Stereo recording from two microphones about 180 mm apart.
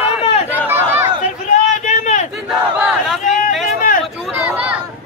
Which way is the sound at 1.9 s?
40° left (ahead or behind).